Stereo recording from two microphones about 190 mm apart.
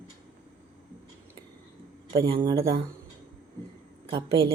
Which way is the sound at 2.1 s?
25° right (ahead or behind).